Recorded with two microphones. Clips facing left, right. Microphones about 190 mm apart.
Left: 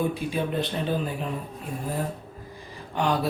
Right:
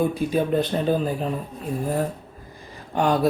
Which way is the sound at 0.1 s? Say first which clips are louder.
Right 6 dB; 40° right (ahead or behind).